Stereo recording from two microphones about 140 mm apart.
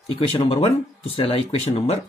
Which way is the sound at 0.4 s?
45° left (ahead or behind).